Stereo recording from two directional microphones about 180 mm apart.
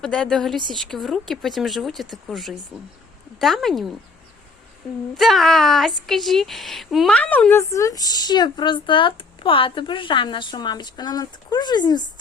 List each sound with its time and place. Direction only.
0.0 s speech: centre (ahead or behind)
5.1 s a woman's voice: centre (ahead or behind); by 12.0 s 25° left (ahead or behind)